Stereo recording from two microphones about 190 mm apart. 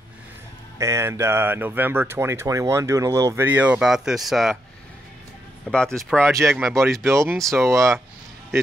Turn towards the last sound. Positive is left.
turn(degrees=-15)  # may be behind; listen again after turning